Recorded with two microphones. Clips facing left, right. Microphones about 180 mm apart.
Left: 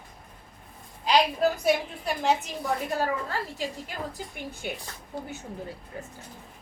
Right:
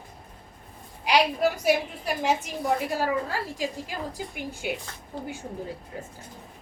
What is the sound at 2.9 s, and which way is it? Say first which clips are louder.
Speech: right 2 dB; 10° right (ahead or behind).